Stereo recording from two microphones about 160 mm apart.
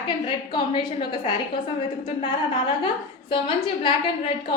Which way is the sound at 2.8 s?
30° left (ahead or behind).